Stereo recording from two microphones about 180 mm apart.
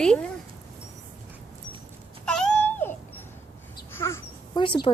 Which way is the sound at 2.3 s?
5° left (ahead or behind).